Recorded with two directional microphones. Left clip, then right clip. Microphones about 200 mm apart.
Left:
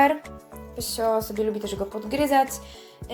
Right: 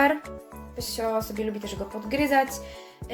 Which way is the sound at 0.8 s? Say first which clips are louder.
Left 3 dB; 20° left (ahead or behind).